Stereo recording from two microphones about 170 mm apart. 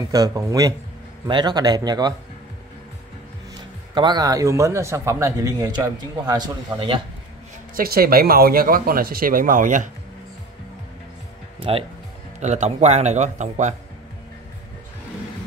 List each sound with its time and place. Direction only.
0.0 s a man's voice: 20° right (ahead or behind)
3.9 s a man's voice: 25° right (ahead or behind)
7.7 s speech: 60° right (ahead or behind)
12.4 s speech: 40° right (ahead or behind)